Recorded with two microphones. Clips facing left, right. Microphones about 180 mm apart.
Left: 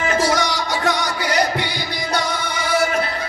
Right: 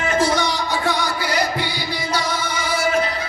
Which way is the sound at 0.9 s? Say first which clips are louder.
Left 2 dB; 75° left (ahead or behind).